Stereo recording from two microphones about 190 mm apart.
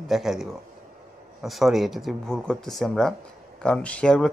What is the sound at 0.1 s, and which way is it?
Speech, centre (ahead or behind).